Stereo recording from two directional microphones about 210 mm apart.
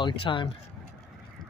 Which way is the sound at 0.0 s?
25° left (ahead or behind).